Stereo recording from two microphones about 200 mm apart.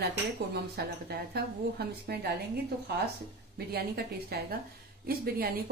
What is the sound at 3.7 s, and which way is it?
A woman's voice, 50° right (ahead or behind).